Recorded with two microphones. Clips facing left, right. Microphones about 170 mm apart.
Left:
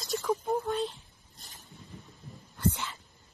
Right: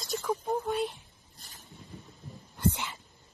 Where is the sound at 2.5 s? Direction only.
20° right (ahead or behind).